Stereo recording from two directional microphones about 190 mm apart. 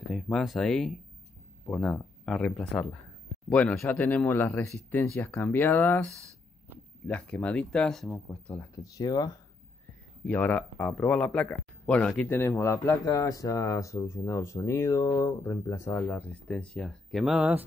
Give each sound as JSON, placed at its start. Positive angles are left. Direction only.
{"t": 0.1, "sound": "speech", "side_deg": 0}
{"t": 10.2, "sound": "speech", "side_deg": 10}